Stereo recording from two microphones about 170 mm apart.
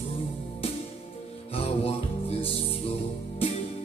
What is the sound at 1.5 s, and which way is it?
Music, 35° left (ahead or behind).